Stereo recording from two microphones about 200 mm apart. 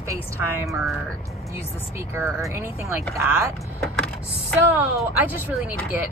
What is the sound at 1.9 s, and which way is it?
Speech, 15° right (ahead or behind).